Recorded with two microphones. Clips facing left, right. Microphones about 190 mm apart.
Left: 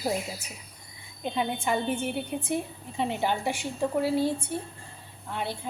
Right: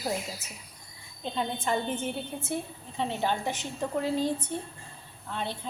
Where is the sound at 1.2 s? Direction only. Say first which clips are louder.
Left 2 dB; 10° left (ahead or behind).